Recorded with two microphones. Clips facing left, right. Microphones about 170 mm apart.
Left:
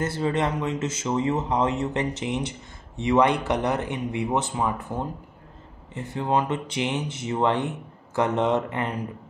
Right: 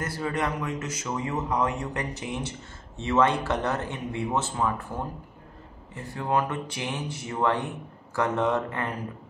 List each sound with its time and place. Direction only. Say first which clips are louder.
0.0 s speech: left 4 dB; 25° left (ahead or behind)